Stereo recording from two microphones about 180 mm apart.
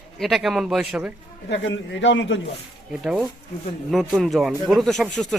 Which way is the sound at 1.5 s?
90° left.